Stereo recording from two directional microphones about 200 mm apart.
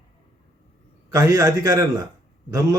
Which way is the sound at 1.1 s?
15° right (ahead or behind).